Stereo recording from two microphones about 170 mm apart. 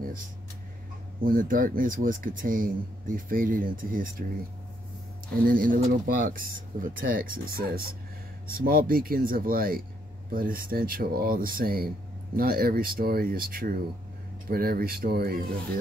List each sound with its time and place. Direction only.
1.2 s speech: 55° right (ahead or behind)
5.5 s speech: 55° right (ahead or behind)